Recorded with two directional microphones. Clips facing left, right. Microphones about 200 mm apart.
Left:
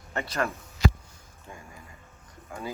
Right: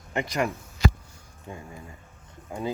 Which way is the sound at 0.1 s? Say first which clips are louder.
Right 3 dB; 15° right (ahead or behind).